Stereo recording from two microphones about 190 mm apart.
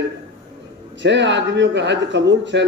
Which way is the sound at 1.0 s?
70° right (ahead or behind).